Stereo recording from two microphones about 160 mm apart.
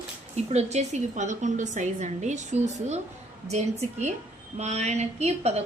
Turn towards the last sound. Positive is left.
turn(degrees=-40)  # may be behind; listen again after turning